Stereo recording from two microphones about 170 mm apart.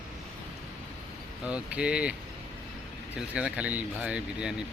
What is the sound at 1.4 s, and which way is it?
Speech, 5° right (ahead or behind).